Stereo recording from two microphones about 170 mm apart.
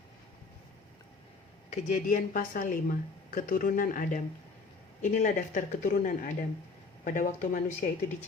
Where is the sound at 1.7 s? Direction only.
45° left (ahead or behind).